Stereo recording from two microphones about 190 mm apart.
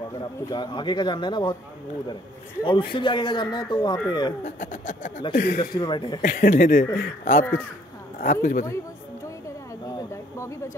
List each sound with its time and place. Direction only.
0.5 s a man's voice: 25° left (ahead or behind)
2.6 s a man's voice: 25° left (ahead or behind)
4.5 s speech: 45° left (ahead or behind)
5.6 s a man's voice: 25° left (ahead or behind)
6.2 s speech: 50° left (ahead or behind)
9.9 s a sound: 15° left (ahead or behind)